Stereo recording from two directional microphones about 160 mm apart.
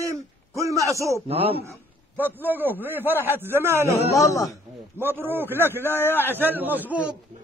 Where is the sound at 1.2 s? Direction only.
40° right (ahead or behind).